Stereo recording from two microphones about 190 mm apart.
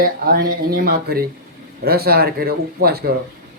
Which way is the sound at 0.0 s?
50° right (ahead or behind).